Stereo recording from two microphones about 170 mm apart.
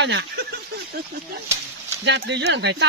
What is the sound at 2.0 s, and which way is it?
Speech, 90° right.